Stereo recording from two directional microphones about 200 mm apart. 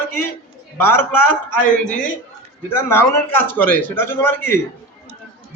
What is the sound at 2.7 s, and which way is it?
A man's voice, 10° left (ahead or behind).